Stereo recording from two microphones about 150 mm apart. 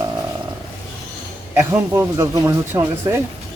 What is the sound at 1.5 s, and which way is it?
Speech, 15° right (ahead or behind).